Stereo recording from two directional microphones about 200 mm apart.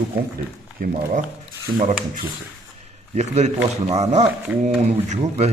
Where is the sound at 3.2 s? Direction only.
35° right (ahead or behind).